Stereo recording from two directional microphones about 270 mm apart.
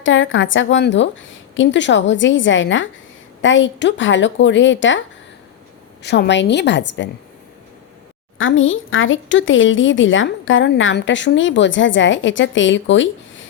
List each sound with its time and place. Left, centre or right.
0.0 s speech: left
6.0 s a woman's voice: left
8.4 s speech: left